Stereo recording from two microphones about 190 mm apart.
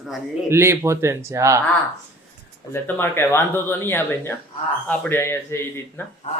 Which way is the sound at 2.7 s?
10° left (ahead or behind).